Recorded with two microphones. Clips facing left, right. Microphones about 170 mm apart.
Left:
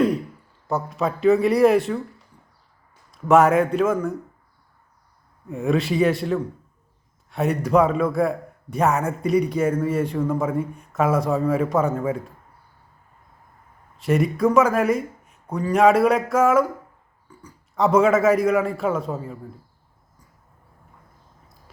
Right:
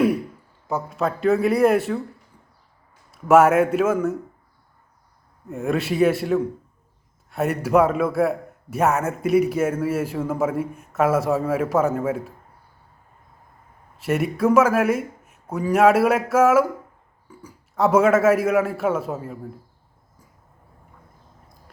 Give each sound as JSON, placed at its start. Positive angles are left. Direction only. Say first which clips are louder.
{"t": 0.7, "sound": "a man's voice", "louder": "even", "side_deg": 0}
{"t": 3.1, "sound": "a man's voice", "louder": "right 1 dB", "side_deg": -5}
{"t": 5.5, "sound": "a man's voice", "louder": "left 2 dB", "side_deg": 0}
{"t": 14.0, "sound": "a man's voice", "louder": "left 1 dB", "side_deg": -5}